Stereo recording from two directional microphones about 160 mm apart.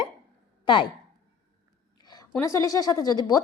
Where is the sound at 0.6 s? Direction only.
30° left (ahead or behind).